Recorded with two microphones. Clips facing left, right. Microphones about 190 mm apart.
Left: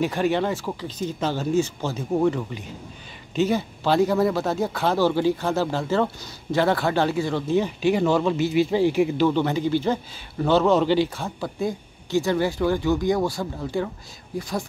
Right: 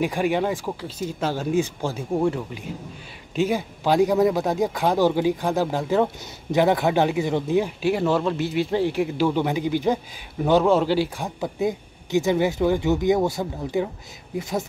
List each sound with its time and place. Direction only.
0.0 s speech: 10° right (ahead or behind)